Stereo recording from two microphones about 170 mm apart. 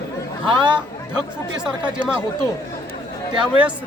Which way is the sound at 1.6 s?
5° right (ahead or behind).